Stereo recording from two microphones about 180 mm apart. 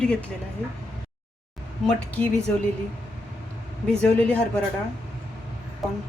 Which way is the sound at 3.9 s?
5° left (ahead or behind).